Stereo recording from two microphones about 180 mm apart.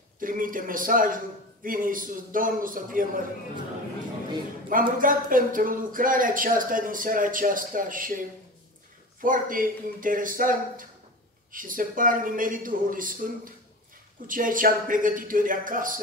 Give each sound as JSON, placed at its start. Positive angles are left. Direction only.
{"t": 0.2, "sound": "speech", "side_deg": -50}
{"t": 4.9, "sound": "speech", "side_deg": -50}
{"t": 9.2, "sound": "speech", "side_deg": -50}